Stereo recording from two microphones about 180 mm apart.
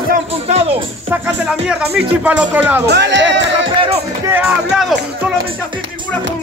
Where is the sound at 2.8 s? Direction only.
75° right (ahead or behind).